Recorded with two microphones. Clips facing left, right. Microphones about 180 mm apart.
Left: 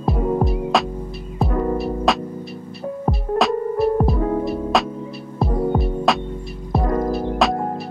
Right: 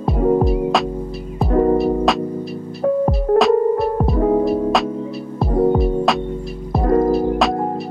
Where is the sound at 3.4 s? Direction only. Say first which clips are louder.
Right 5 dB; centre (ahead or behind).